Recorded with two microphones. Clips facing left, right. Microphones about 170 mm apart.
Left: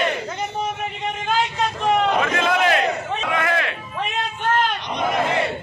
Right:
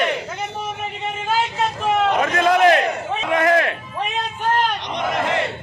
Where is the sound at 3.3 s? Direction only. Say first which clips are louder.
Right 7 dB; 40° right (ahead or behind).